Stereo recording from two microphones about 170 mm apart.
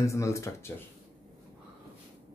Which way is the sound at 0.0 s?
15° left (ahead or behind).